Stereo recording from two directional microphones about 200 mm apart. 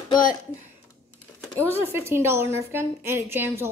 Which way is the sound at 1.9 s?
10° right (ahead or behind).